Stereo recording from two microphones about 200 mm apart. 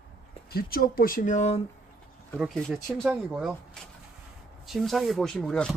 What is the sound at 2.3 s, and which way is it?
Speech, centre (ahead or behind).